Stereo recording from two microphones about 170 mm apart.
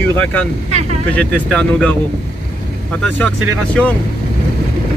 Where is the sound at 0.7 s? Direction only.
40° right (ahead or behind).